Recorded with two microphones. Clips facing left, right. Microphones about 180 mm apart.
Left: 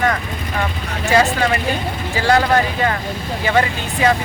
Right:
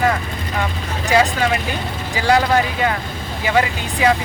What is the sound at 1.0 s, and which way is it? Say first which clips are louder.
Speech: left 1 dB; 15° right (ahead or behind).